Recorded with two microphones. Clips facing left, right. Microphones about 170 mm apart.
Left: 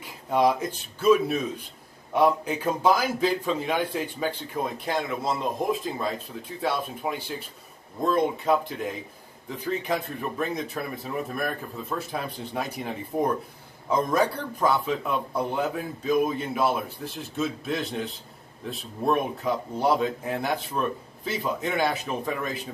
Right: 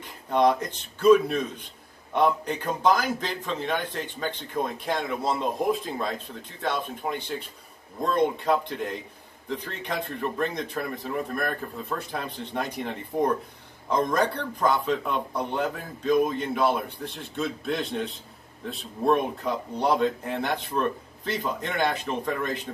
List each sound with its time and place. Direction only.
0.0 s a man's voice: 5° left (ahead or behind)